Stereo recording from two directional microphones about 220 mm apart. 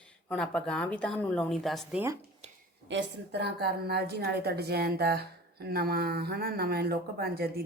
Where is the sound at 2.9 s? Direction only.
50° right (ahead or behind).